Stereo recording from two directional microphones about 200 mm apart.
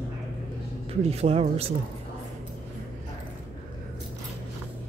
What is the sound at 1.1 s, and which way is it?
Speech, 30° right (ahead or behind).